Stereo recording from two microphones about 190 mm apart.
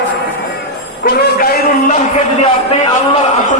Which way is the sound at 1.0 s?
55° left (ahead or behind).